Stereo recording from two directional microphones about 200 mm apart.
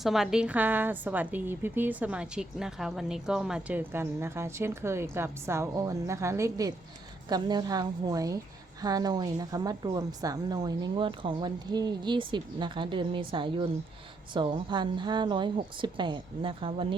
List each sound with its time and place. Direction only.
0.0 s a woman's voice: centre (ahead or behind); by 17.0 s 25° right (ahead or behind)